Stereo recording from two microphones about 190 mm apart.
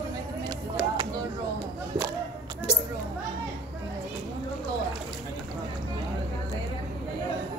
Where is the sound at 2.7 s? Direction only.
5° right (ahead or behind).